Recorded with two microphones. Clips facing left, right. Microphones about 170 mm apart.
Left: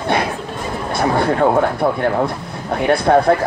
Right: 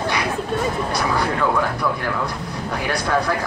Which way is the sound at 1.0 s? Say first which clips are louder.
Left 8 dB; 50° left (ahead or behind).